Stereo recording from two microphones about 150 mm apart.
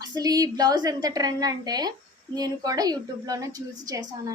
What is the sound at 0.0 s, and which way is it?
A woman's voice, 25° right (ahead or behind).